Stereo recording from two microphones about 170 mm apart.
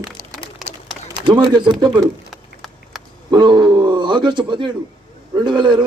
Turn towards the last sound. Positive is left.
turn(degrees=-25)  # may be behind; listen again after turning